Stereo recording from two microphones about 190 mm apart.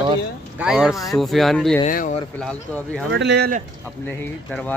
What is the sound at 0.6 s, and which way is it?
Speech, 5° right (ahead or behind).